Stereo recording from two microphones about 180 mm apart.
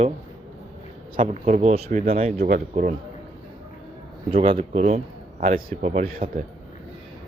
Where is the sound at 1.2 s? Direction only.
40° right (ahead or behind).